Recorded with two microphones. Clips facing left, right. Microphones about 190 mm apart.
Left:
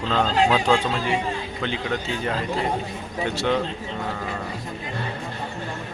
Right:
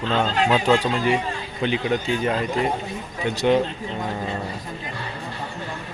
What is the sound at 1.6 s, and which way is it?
Speech, 15° right (ahead or behind).